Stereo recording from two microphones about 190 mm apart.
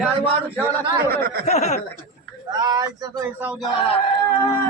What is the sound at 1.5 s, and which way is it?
Speech, 35° left (ahead or behind).